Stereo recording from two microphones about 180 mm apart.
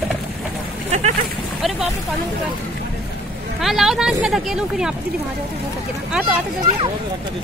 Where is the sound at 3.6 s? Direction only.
Centre (ahead or behind).